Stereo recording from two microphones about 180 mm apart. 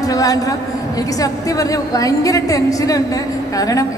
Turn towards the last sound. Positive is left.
turn(degrees=20)  # may be behind; listen again after turning